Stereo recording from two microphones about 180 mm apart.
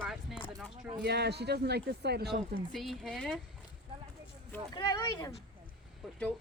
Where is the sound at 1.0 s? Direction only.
65° right (ahead or behind).